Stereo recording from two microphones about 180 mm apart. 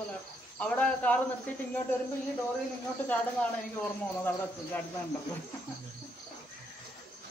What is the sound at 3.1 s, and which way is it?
Speech, 10° left (ahead or behind).